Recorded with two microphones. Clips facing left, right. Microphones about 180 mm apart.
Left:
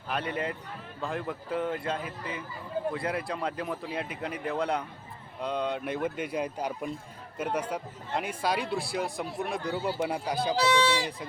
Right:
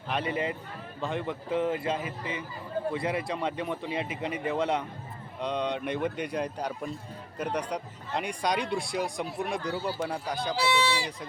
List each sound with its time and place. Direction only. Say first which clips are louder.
0.1 s speech: right 2 dB; centre (ahead or behind)
10.7 s speech: left 1 dB; 10° right (ahead or behind)